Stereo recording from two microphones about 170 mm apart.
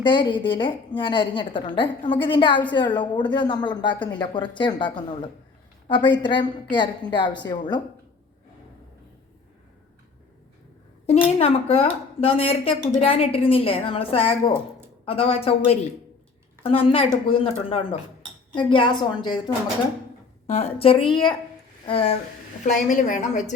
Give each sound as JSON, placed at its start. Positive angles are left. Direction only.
{"t": 0.0, "sound": "a woman's voice", "side_deg": 25}
{"t": 11.3, "sound": "a woman's voice", "side_deg": 35}
{"t": 20.5, "sound": "a woman's voice", "side_deg": 35}
{"t": 22.6, "sound": "a woman's voice", "side_deg": 50}